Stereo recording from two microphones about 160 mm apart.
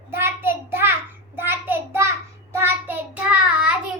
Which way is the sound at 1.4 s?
15° right (ahead or behind).